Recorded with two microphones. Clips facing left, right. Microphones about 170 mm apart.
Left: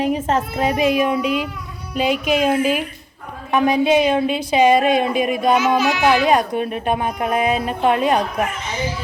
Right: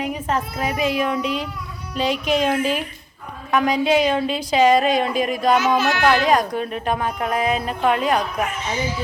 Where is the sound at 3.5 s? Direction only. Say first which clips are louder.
Left 3 dB; 25° left (ahead or behind).